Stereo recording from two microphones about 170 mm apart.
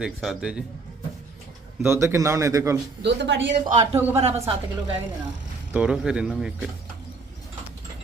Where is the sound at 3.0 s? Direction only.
90° right.